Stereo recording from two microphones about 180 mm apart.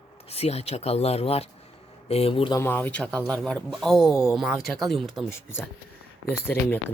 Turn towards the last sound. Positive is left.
turn(degrees=10)  # may be behind; listen again after turning